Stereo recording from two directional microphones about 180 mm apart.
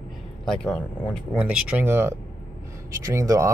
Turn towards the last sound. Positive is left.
turn(degrees=-15)  # may be behind; listen again after turning